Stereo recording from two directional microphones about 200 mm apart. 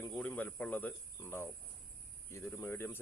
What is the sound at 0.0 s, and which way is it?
Speech, 5° left (ahead or behind).